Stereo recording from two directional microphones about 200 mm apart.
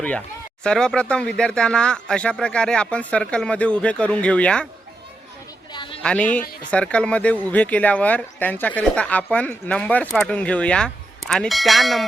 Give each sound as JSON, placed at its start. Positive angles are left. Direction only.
{"t": 0.6, "sound": "speech", "side_deg": 5}
{"t": 5.7, "sound": "a sound", "side_deg": 25}
{"t": 6.0, "sound": "speech", "side_deg": 5}